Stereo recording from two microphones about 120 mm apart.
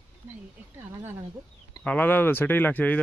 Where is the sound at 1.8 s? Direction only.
10° left (ahead or behind).